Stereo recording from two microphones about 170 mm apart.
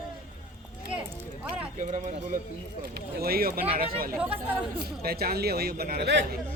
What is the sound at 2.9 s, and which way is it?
Speech, 65° right (ahead or behind).